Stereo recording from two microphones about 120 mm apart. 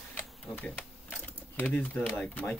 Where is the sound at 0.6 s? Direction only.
10° left (ahead or behind).